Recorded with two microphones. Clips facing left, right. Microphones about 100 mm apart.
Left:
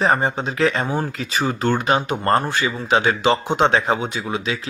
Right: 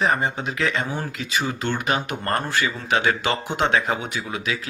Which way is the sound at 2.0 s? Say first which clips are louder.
Left 6 dB; 25° left (ahead or behind).